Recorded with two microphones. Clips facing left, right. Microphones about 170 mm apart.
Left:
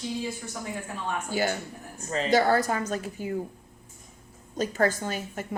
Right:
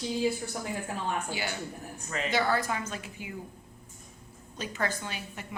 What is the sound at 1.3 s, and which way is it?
A woman's voice, 40° left (ahead or behind).